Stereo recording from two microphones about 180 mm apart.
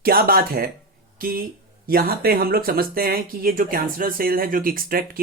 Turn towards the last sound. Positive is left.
turn(degrees=-55)  # may be behind; listen again after turning